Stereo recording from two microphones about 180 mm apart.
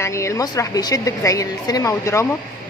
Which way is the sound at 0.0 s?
15° left (ahead or behind).